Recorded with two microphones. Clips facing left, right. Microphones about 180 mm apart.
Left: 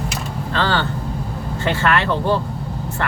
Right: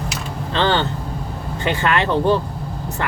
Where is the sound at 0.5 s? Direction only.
20° right (ahead or behind).